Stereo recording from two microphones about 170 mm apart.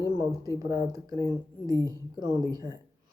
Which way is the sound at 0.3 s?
20° right (ahead or behind).